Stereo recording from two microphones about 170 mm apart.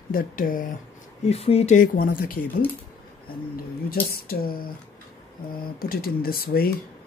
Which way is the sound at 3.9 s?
60° left (ahead or behind).